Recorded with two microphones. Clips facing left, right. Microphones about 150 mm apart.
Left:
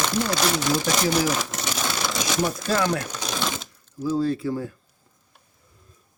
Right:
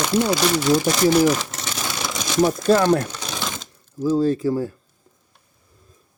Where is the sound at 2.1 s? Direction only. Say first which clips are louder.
Right 8 dB; 25° right (ahead or behind).